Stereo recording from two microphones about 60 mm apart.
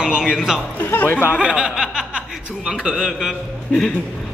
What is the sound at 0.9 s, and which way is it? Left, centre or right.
Speech, left.